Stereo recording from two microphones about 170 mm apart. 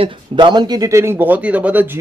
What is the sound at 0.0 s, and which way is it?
A man's voice, 25° right (ahead or behind).